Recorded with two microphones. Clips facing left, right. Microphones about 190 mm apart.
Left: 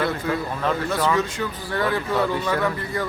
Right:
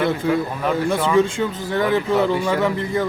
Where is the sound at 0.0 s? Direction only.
15° right (ahead or behind).